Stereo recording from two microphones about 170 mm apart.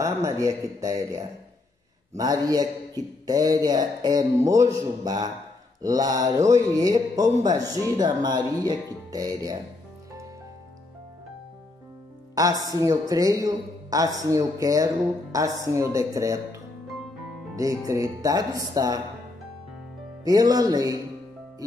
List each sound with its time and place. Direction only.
0.0 s speech: 20° right (ahead or behind)
12.4 s speech: 20° right (ahead or behind)
20.2 s speech: 20° right (ahead or behind)